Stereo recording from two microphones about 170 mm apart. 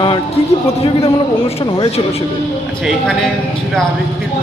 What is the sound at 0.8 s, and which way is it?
Speech, 35° left (ahead or behind).